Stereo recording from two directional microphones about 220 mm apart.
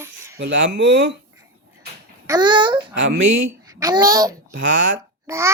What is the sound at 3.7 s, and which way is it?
Child singing, 15° right (ahead or behind).